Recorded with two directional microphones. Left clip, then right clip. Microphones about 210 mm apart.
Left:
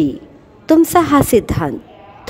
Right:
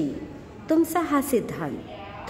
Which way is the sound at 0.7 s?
45° left (ahead or behind).